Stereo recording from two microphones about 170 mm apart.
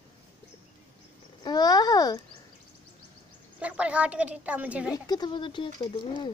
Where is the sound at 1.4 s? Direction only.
25° left (ahead or behind).